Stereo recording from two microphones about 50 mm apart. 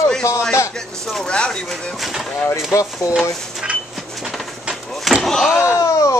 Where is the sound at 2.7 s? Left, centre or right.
Left.